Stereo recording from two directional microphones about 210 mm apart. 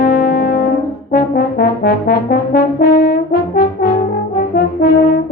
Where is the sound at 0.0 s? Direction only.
40° left (ahead or behind).